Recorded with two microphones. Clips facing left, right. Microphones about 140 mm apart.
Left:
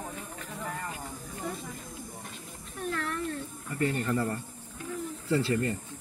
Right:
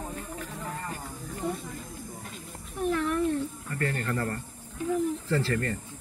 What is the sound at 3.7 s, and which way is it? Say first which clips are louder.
Speech: left 3 dB; 15° left (ahead or behind).